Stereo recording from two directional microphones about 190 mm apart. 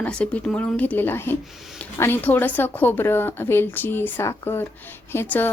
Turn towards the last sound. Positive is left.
turn(degrees=10)  # may be behind; listen again after turning